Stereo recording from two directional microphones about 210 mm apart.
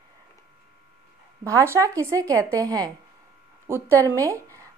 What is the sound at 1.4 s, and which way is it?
A woman's voice, 15° right (ahead or behind).